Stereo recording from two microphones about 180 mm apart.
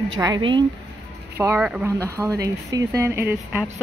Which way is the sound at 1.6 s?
5° right (ahead or behind).